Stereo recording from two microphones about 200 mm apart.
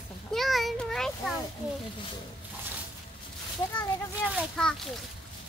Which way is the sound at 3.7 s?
5° left (ahead or behind).